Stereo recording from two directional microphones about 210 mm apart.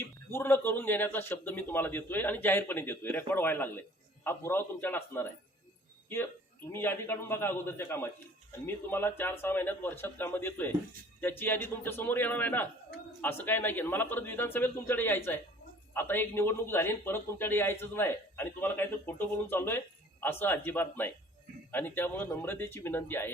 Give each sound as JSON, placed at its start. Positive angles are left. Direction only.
{"t": 0.0, "sound": "a man's voice", "side_deg": 10}
{"t": 6.7, "sound": "a man's voice", "side_deg": 10}